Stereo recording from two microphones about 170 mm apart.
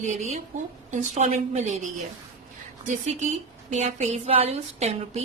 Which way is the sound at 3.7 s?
40° right (ahead or behind).